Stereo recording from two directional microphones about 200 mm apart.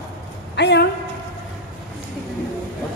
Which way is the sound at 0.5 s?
60° left (ahead or behind).